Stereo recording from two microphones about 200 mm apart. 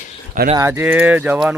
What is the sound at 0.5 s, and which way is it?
Speech, 10° right (ahead or behind).